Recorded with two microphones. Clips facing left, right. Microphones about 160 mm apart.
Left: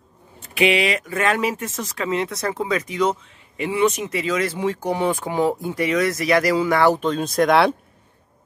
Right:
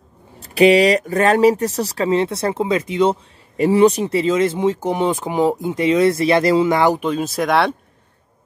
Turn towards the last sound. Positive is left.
turn(degrees=0)  # may be behind; listen again after turning